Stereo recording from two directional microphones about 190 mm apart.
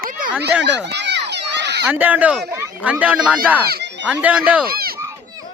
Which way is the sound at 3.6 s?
55° right (ahead or behind).